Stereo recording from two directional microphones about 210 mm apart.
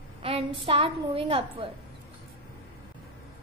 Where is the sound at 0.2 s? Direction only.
25° right (ahead or behind).